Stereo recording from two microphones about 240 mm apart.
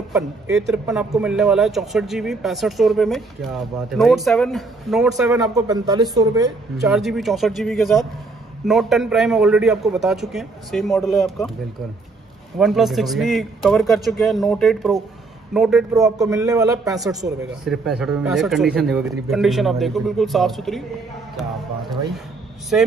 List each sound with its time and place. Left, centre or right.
0.6 s speech: centre
5.3 s a man's voice: centre
6.8 s speech: centre
12.5 s speech: centre
16.0 s a man's voice: centre
17.6 s speech: centre
22.7 s speech: centre